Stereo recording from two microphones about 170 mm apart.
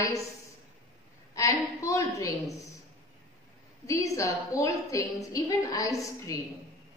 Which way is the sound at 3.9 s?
20° left (ahead or behind).